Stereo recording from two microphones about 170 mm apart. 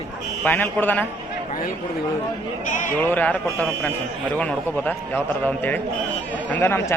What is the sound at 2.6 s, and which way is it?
Speech, 45° left (ahead or behind).